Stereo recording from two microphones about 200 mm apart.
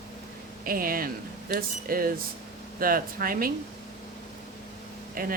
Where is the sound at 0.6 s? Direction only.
45° right (ahead or behind).